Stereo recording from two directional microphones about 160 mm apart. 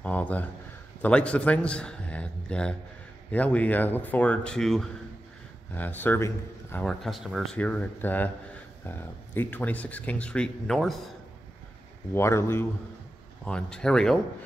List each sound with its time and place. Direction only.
0.0 s a sound: 10° left (ahead or behind)
1.0 s speech: 5° left (ahead or behind)
6.8 s speech: centre (ahead or behind)
12.1 s speech: 15° left (ahead or behind)
13.5 s speech: 5° left (ahead or behind)